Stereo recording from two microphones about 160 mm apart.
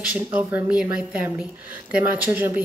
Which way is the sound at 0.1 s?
10° right (ahead or behind).